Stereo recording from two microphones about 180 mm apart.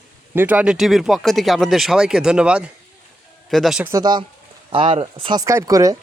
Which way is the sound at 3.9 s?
20° right (ahead or behind).